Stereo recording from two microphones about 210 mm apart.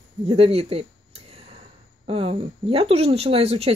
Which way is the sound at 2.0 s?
25° right (ahead or behind).